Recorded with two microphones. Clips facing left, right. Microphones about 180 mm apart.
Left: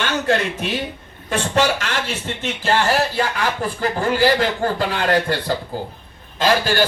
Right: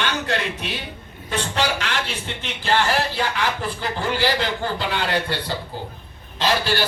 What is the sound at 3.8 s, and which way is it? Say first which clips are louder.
A man's voice: left 7 dB; 45° left (ahead or behind).